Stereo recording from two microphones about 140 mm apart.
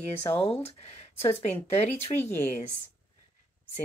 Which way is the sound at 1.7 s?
50° left (ahead or behind).